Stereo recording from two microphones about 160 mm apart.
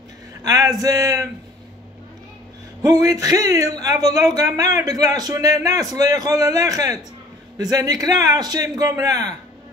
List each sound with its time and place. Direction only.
0.4 s speech: 20° right (ahead or behind)
2.8 s speech: 20° right (ahead or behind)